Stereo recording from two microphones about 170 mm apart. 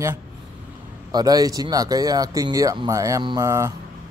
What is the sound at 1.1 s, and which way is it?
Speech, 20° right (ahead or behind).